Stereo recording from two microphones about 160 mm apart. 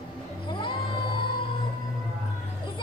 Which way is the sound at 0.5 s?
30° left (ahead or behind).